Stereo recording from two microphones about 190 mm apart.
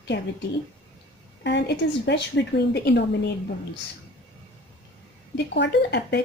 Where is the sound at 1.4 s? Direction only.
65° left (ahead or behind).